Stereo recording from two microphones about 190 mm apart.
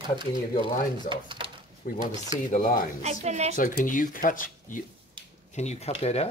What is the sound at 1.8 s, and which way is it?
Speech, 45° left (ahead or behind).